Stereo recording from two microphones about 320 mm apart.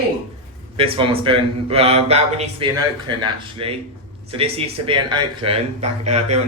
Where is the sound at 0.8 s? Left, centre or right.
Centre.